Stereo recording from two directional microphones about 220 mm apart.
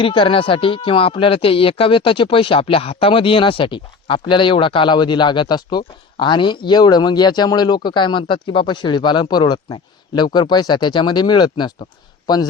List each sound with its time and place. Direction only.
0.0 s speech: 25° left (ahead or behind)